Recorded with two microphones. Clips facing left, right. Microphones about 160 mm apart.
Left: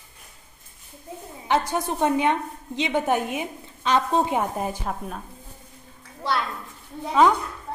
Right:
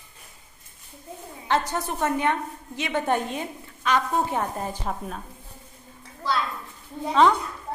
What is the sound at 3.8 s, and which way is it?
Speech, 25° left (ahead or behind).